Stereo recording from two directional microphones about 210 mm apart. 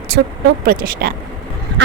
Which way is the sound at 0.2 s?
50° right (ahead or behind).